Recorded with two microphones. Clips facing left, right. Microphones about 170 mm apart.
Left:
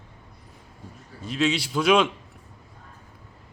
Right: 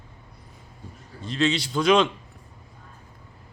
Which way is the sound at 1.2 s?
5° left (ahead or behind).